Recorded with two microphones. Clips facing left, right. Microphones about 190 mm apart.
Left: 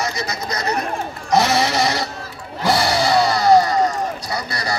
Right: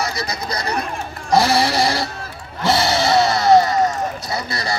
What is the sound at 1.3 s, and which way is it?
Sheep, 35° right (ahead or behind).